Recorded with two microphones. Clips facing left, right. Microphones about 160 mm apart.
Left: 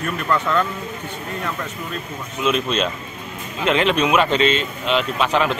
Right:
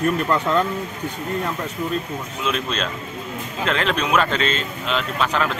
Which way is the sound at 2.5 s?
10° left (ahead or behind).